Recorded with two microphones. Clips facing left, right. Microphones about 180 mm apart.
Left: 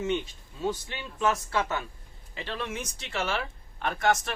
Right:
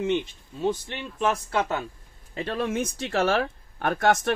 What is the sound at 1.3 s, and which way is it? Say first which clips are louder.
Speech: right 3 dB; 35° right (ahead or behind).